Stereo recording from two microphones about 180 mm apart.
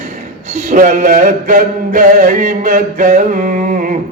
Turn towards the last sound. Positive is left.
turn(degrees=-45)  # may be behind; listen again after turning